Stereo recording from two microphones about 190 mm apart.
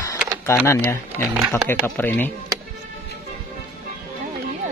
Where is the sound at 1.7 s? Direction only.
10° left (ahead or behind).